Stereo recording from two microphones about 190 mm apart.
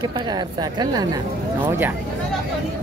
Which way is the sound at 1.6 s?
10° right (ahead or behind).